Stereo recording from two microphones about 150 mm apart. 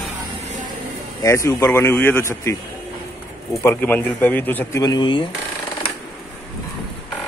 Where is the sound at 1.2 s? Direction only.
20° left (ahead or behind).